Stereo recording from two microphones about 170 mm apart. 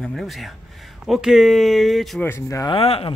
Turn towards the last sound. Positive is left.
turn(degrees=35)  # may be behind; listen again after turning